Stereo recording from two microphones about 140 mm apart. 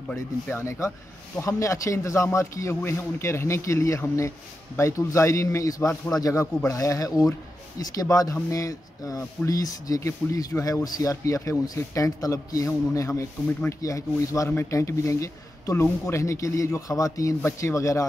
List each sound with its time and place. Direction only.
0.6 s speech: 20° left (ahead or behind)